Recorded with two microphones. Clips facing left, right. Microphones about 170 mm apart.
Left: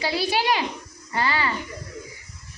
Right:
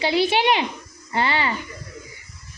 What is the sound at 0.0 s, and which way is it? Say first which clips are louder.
Speech: right 5 dB; 25° right (ahead or behind).